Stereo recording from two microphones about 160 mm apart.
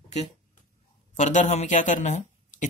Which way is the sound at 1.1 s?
45° left (ahead or behind).